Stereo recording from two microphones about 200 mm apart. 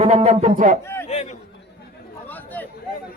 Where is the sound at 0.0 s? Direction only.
30° right (ahead or behind).